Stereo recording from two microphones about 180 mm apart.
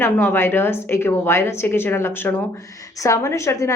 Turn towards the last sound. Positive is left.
turn(degrees=15)  # may be behind; listen again after turning